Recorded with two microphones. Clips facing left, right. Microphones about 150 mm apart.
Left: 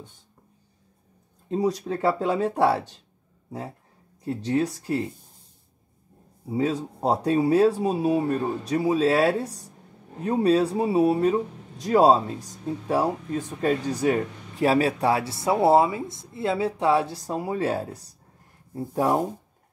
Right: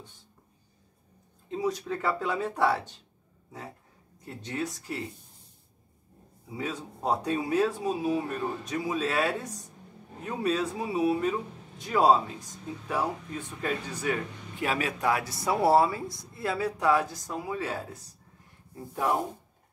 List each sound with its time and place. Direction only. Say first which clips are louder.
1.5 s speech: left 5 dB; 35° left (ahead or behind)
4.2 s speech: left 10 dB; 30° left (ahead or behind)
6.5 s speech: left 10 dB; 35° left (ahead or behind)